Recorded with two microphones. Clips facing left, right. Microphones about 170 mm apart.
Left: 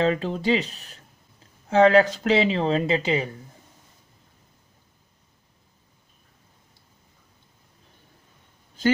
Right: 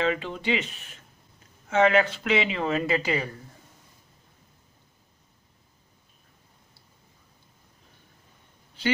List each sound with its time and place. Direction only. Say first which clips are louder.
0.0 s speech: left 4 dB; 40° left (ahead or behind); by 3.3 s 25° left (ahead or behind)